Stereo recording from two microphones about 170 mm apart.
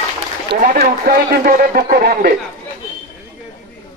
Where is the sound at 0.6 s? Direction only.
60° right (ahead or behind).